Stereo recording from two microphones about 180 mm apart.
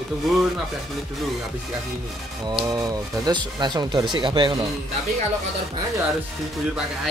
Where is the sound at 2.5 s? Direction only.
25° right (ahead or behind).